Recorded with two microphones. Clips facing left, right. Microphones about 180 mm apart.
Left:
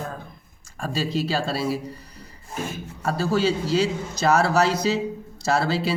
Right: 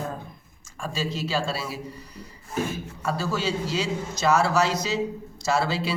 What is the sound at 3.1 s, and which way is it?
Speech, 35° left (ahead or behind).